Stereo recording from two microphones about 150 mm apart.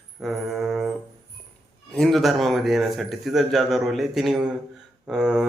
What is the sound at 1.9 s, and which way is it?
A man's voice, centre (ahead or behind).